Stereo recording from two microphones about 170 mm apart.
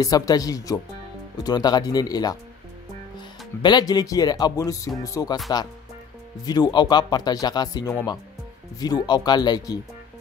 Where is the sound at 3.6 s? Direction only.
25° left (ahead or behind).